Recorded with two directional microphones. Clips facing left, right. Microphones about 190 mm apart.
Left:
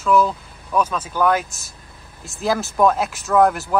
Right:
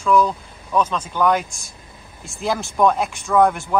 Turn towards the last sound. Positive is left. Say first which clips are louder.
# even
turn(degrees=5)  # may be behind; listen again after turning